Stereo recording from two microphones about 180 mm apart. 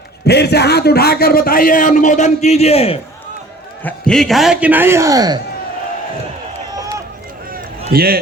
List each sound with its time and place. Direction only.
0.3 s a man's voice: 65° left (ahead or behind); by 3.0 s 35° left (ahead or behind)
3.8 s a man's voice: 5° left (ahead or behind); by 5.4 s 20° right (ahead or behind)
7.9 s a man's voice: 60° right (ahead or behind)